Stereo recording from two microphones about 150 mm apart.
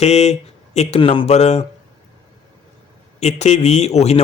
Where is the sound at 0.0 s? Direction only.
45° left (ahead or behind).